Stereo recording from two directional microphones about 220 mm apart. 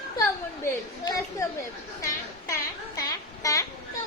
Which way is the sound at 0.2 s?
15° left (ahead or behind).